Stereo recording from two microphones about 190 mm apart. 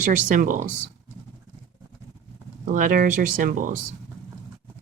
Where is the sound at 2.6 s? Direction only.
45° right (ahead or behind).